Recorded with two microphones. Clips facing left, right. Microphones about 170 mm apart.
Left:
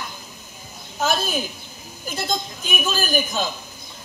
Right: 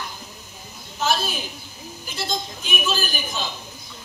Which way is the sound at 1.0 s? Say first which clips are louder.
Left 2 dB; 45° left (ahead or behind).